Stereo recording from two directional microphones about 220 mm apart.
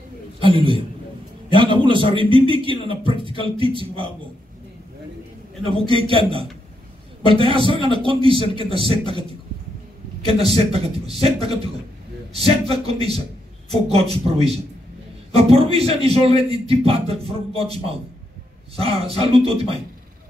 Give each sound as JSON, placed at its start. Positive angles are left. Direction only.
{"t": 0.4, "sound": "a man's voice", "side_deg": -25}
{"t": 5.7, "sound": "a man's voice", "side_deg": -25}
{"t": 10.2, "sound": "a man's voice", "side_deg": -25}
{"t": 18.8, "sound": "a man's voice", "side_deg": -25}